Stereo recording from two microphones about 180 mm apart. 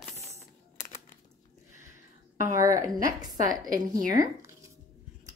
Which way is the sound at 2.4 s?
15° right (ahead or behind).